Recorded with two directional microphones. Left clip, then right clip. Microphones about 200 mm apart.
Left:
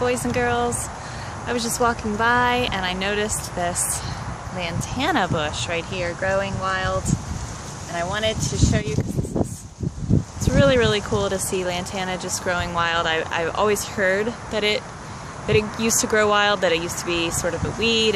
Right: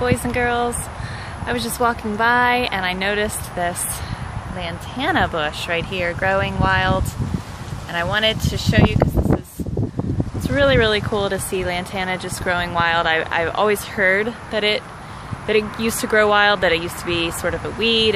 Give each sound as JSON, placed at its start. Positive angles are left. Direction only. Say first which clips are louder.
{"t": 0.0, "sound": "speech", "louder": "right 2 dB", "side_deg": -10}
{"t": 10.4, "sound": "speech", "louder": "right 2 dB", "side_deg": -10}